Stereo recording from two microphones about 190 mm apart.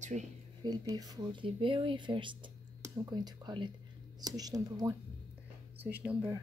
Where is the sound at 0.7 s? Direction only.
20° right (ahead or behind).